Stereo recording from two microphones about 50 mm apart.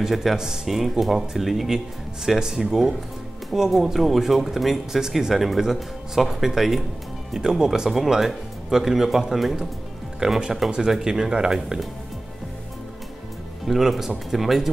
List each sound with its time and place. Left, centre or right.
0.1 s speech: centre
10.2 s speech: centre
13.7 s speech: centre